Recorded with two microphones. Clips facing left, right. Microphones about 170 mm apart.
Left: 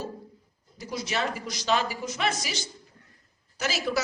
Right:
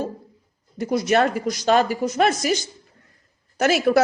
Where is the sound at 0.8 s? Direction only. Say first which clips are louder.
Right 12 dB; 55° right (ahead or behind).